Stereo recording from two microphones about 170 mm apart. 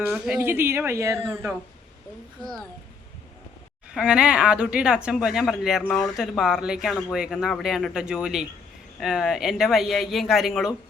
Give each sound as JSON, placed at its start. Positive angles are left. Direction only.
{"t": 0.1, "sound": "speech", "side_deg": -5}
{"t": 2.4, "sound": "speech", "side_deg": 5}
{"t": 3.9, "sound": "speech", "side_deg": -5}